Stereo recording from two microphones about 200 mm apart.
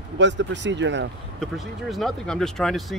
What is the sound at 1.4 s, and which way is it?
Speech, centre (ahead or behind).